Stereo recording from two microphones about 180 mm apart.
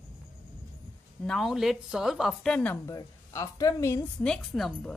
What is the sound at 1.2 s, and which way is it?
A woman's voice, centre (ahead or behind).